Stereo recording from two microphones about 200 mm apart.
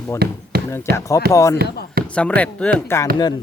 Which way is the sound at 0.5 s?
50° right (ahead or behind).